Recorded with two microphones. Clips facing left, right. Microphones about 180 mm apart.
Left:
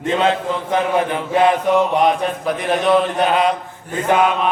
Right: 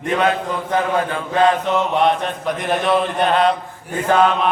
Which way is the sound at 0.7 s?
20° left (ahead or behind).